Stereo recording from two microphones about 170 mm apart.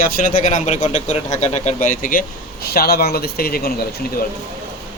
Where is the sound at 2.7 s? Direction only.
65° left (ahead or behind).